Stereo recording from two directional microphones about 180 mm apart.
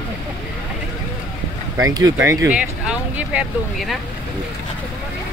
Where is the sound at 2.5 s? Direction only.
5° right (ahead or behind).